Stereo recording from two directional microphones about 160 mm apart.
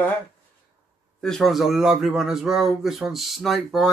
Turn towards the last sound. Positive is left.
turn(degrees=0)  # may be behind; listen again after turning